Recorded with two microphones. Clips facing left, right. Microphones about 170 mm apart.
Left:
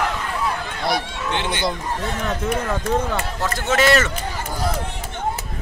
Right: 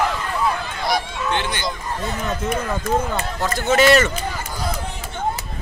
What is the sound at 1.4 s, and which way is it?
Speech, 25° left (ahead or behind).